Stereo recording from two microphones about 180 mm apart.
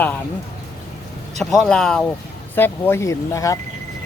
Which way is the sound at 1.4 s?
Centre (ahead or behind).